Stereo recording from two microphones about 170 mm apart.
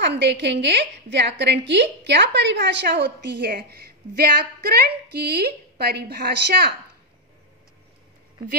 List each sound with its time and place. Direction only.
0.0 s a woman's voice: 90° right; by 6.7 s 65° right (ahead or behind)